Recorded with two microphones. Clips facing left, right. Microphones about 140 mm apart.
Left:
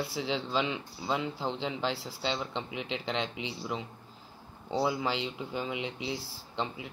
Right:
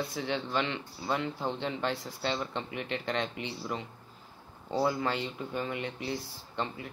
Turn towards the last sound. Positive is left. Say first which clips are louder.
# even
turn(degrees=5)  # may be behind; listen again after turning